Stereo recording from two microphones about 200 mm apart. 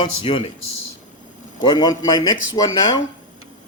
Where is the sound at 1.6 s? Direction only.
20° left (ahead or behind).